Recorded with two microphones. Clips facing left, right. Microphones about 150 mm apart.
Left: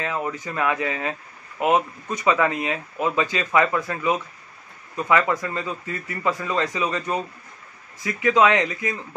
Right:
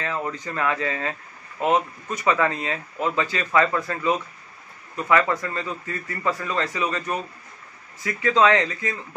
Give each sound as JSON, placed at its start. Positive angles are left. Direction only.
{"t": 0.0, "sound": "speech", "side_deg": 15}